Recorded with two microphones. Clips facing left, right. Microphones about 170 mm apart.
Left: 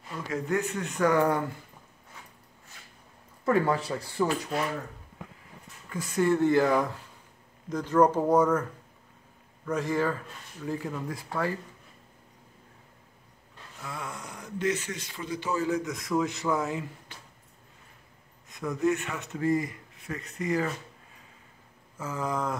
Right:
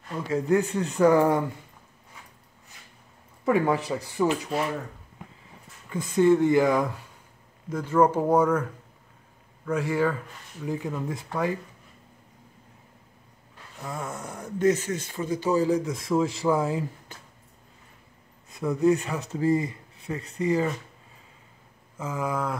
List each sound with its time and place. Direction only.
0.3 s speech: 30° right (ahead or behind)
3.4 s speech: 15° right (ahead or behind)
5.9 s speech: 25° right (ahead or behind)
9.7 s speech: 10° right (ahead or behind)
13.8 s speech: 45° right (ahead or behind); by 16.8 s 30° right (ahead or behind)
18.5 s speech: 30° right (ahead or behind)
21.9 s speech: 10° right (ahead or behind)